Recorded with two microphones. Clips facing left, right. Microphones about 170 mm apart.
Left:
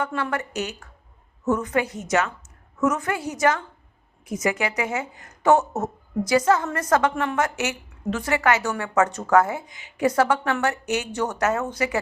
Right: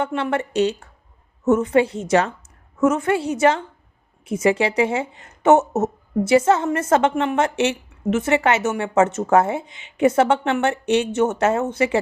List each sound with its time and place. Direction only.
0.0 s a woman's voice: 25° right (ahead or behind)